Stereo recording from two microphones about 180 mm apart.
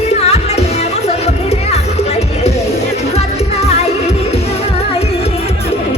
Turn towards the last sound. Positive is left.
turn(degrees=35)  # may be behind; listen again after turning